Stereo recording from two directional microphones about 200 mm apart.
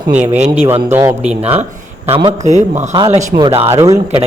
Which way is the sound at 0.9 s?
10° right (ahead or behind).